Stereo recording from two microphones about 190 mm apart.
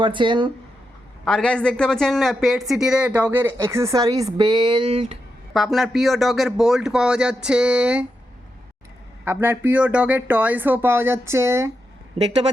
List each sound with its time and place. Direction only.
0.0 s speech: 25° right (ahead or behind)
1.2 s speech: 5° left (ahead or behind); by 5.1 s 30° right (ahead or behind)
5.5 s a man's voice: centre (ahead or behind)
9.2 s speech: 10° right (ahead or behind)